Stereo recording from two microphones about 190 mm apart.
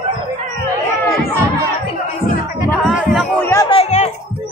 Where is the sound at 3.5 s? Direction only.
20° left (ahead or behind).